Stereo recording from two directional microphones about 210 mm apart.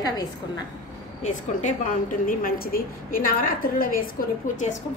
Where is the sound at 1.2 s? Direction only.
35° left (ahead or behind).